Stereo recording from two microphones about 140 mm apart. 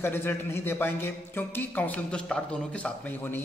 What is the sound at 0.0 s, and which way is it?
A man's voice, 15° left (ahead or behind).